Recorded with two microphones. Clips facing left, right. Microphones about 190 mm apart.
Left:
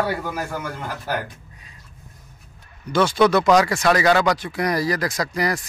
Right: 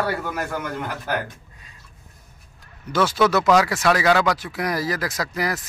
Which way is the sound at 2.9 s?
5° right (ahead or behind).